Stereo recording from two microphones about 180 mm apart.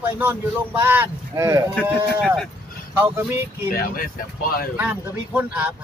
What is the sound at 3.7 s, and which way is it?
Speech, 55° left (ahead or behind).